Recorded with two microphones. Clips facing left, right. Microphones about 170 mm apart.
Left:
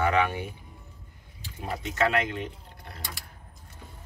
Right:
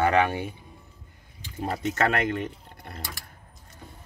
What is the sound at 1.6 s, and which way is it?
Speech, 50° right (ahead or behind).